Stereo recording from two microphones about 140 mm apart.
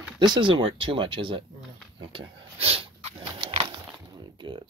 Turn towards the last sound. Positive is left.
turn(degrees=-35)  # may be behind; listen again after turning